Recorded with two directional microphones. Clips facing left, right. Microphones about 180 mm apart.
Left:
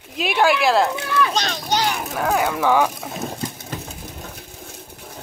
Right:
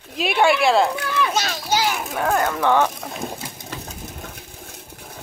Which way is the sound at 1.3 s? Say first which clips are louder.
Even; 5° right (ahead or behind).